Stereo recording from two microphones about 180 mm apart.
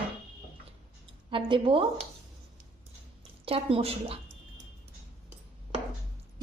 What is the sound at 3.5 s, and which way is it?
Speech, 30° right (ahead or behind).